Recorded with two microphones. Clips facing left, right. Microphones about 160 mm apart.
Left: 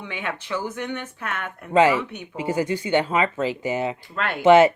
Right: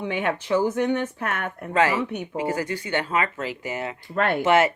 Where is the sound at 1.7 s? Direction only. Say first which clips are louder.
Left 4 dB; 20° left (ahead or behind).